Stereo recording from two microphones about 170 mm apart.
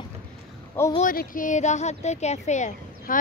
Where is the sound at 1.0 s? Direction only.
55° left (ahead or behind).